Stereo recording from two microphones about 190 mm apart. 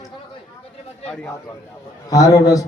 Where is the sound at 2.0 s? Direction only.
20° left (ahead or behind).